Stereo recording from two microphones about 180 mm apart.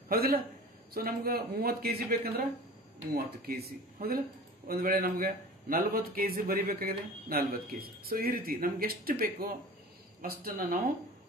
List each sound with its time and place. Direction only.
0.1 s a man's voice: 55° right (ahead or behind)